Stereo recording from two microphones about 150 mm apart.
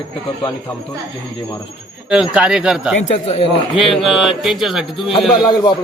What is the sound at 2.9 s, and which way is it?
Speech, 40° left (ahead or behind).